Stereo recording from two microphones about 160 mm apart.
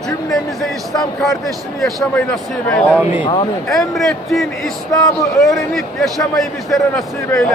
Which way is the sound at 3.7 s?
Centre (ahead or behind).